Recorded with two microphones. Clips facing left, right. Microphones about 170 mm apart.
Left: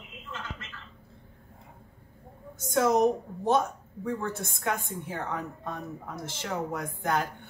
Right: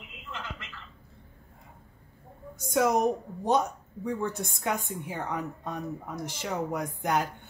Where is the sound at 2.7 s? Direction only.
10° right (ahead or behind).